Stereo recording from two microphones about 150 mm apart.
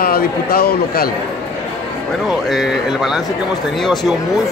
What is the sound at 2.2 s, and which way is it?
Speech, centre (ahead or behind).